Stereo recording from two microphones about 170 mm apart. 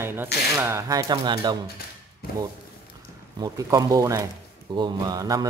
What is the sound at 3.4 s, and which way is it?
Speech, 20° right (ahead or behind).